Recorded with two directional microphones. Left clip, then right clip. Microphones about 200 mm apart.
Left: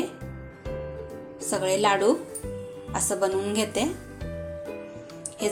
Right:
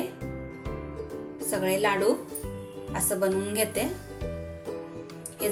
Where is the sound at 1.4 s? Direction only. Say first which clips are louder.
Left 3 dB; 35° left (ahead or behind).